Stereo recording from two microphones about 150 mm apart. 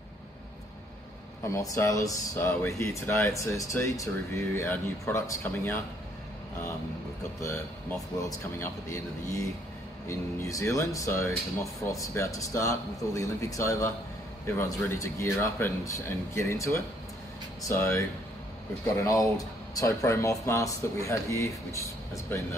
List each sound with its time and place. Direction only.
1.5 s speech: 20° left (ahead or behind)
8.3 s speech: 20° left (ahead or behind)
10.0 s speech: 20° left (ahead or behind)